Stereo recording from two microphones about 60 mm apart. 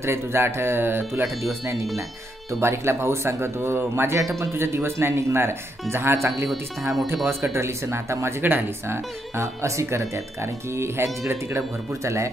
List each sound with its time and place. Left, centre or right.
0.0 s speech: right
1.4 s speech: right
8.4 s speech: right